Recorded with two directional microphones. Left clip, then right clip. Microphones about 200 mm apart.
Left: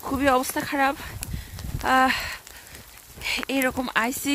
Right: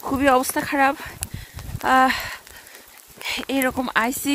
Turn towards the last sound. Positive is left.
turn(degrees=-10)  # may be behind; listen again after turning